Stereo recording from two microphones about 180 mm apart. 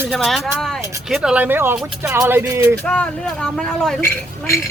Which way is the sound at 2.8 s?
10° left (ahead or behind).